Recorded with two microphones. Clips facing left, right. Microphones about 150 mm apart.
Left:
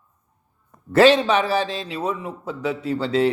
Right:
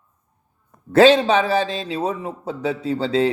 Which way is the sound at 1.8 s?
25° right (ahead or behind).